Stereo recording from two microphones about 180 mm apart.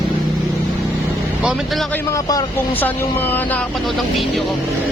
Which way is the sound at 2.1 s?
20° left (ahead or behind).